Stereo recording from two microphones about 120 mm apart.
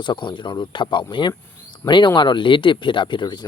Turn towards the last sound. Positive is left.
turn(degrees=35)  # may be behind; listen again after turning